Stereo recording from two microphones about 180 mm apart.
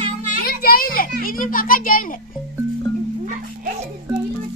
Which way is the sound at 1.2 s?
50° left (ahead or behind).